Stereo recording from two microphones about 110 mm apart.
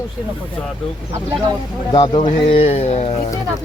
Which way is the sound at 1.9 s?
45° left (ahead or behind).